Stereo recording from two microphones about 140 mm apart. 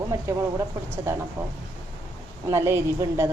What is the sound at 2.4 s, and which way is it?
Speech, 20° right (ahead or behind).